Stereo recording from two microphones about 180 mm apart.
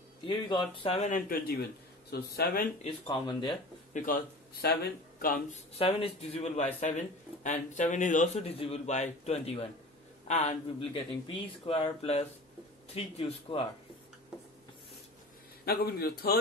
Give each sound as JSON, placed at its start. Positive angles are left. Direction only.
{"t": 0.3, "sound": "speech", "side_deg": 25}
{"t": 2.8, "sound": "speech", "side_deg": 25}
{"t": 3.9, "sound": "a man's voice", "side_deg": 50}
{"t": 5.8, "sound": "a man's voice", "side_deg": 35}
{"t": 15.6, "sound": "a man's voice", "side_deg": 60}